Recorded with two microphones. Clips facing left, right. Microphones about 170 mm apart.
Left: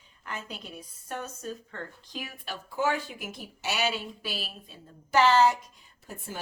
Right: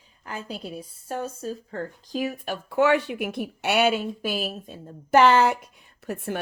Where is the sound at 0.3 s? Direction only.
35° right (ahead or behind).